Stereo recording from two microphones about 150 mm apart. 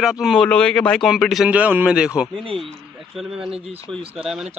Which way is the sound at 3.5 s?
40° right (ahead or behind).